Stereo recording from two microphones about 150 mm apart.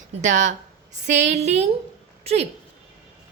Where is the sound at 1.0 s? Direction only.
50° right (ahead or behind).